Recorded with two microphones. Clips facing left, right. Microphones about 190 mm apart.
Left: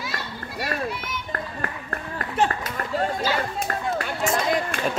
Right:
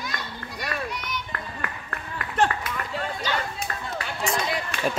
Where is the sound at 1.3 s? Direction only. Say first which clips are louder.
Left 3 dB; 40° left (ahead or behind).